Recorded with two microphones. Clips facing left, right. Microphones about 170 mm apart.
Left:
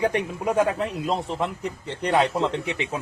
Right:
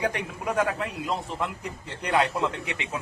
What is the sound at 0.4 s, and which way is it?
Speech, 30° left (ahead or behind).